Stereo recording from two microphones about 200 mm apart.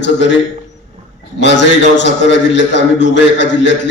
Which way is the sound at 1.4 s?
60° left (ahead or behind).